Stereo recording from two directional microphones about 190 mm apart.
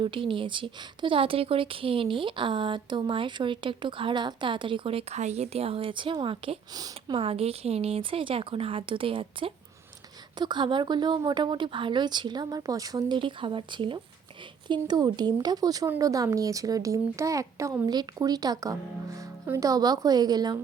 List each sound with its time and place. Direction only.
0.0 s a woman's voice: 25° right (ahead or behind)